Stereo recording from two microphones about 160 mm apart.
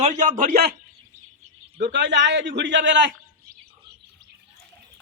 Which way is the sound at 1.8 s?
90° right.